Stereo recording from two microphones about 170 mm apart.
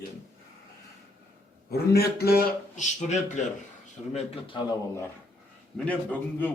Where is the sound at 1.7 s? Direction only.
70° left (ahead or behind).